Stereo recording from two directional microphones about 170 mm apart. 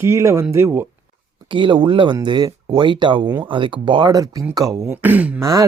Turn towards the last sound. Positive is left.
turn(degrees=-20)  # may be behind; listen again after turning